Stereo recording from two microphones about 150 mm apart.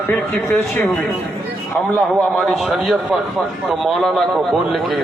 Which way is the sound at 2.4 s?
Centre (ahead or behind).